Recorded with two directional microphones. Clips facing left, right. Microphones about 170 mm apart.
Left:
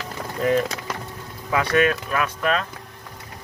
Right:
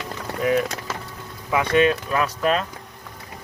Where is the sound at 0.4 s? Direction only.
5° right (ahead or behind).